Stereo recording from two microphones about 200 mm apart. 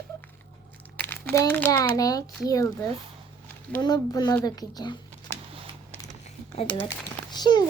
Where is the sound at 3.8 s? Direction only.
20° left (ahead or behind).